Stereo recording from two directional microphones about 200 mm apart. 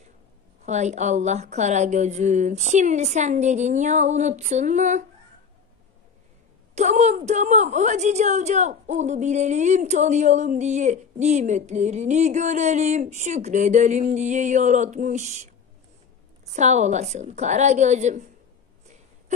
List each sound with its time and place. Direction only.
0.7 s a woman's voice: 35° right (ahead or behind)
6.7 s a woman's voice: 35° right (ahead or behind)
16.5 s a woman's voice: 35° right (ahead or behind)